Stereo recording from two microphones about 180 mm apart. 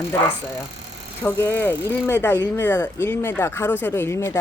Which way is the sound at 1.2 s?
10° left (ahead or behind).